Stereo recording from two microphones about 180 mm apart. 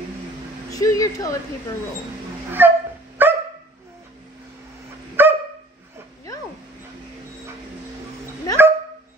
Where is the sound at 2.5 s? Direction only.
10° right (ahead or behind).